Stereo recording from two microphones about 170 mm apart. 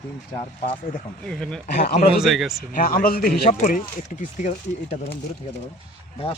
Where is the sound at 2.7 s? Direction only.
55° left (ahead or behind).